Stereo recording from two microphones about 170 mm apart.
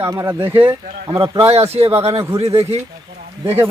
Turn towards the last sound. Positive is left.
turn(degrees=-10)  # may be behind; listen again after turning